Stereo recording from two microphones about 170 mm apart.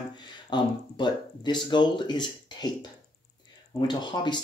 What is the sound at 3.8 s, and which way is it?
Speech, 25° left (ahead or behind).